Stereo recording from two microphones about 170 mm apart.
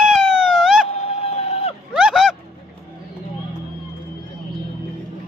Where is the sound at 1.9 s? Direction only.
5° right (ahead or behind).